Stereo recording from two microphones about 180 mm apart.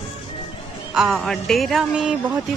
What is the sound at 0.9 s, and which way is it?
Speech, 5° right (ahead or behind).